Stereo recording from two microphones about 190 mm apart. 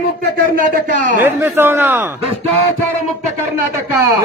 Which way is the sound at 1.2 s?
10° right (ahead or behind).